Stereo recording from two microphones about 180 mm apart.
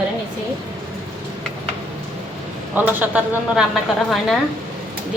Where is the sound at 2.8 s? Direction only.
10° right (ahead or behind).